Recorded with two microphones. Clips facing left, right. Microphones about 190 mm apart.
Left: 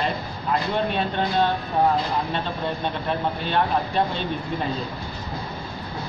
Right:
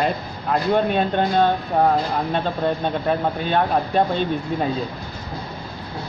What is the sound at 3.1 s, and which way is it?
Speech, 45° right (ahead or behind).